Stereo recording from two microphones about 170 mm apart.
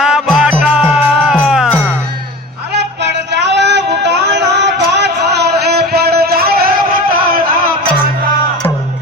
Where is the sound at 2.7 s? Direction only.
90° right; by 6.5 s 65° right (ahead or behind).